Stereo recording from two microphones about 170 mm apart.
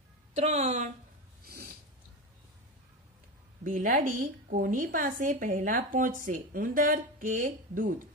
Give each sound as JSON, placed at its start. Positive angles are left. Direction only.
{"t": 0.3, "sound": "a woman's voice", "side_deg": -40}
{"t": 1.4, "sound": "snort", "side_deg": -60}
{"t": 3.6, "sound": "a woman's voice", "side_deg": -50}